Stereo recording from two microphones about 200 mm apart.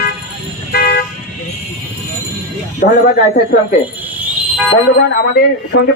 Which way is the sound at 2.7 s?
50° left (ahead or behind).